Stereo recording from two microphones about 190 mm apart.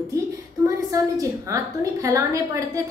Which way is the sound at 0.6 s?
15° right (ahead or behind).